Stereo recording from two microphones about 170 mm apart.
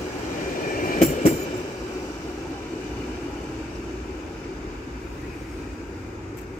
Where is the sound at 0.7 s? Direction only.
55° left (ahead or behind).